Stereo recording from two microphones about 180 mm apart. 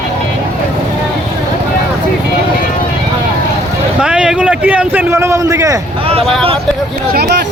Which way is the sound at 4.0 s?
5° right (ahead or behind).